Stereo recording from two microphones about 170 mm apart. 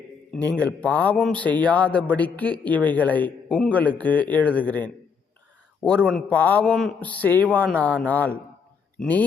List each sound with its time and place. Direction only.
0.5 s a man's voice: 5° left (ahead or behind)